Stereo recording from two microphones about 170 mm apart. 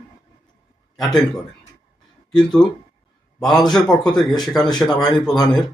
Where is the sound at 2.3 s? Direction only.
5° left (ahead or behind).